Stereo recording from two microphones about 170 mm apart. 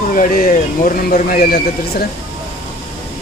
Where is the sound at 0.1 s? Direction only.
50° left (ahead or behind).